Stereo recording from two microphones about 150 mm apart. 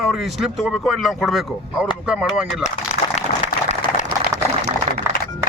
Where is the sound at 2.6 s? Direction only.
45° left (ahead or behind).